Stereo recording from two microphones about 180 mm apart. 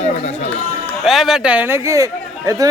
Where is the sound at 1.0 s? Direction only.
Centre (ahead or behind); by 2.7 s 20° right (ahead or behind).